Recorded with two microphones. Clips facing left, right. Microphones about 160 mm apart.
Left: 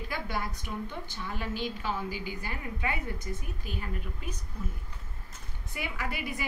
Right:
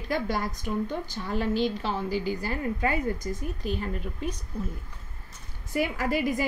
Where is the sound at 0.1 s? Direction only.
40° right (ahead or behind).